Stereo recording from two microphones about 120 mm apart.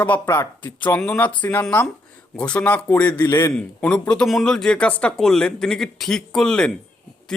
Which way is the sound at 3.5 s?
10° left (ahead or behind).